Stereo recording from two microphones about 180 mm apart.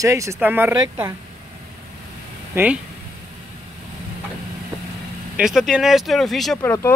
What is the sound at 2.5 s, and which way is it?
Speech, 10° right (ahead or behind).